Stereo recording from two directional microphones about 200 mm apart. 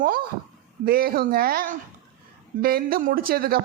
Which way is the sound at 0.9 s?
50° right (ahead or behind).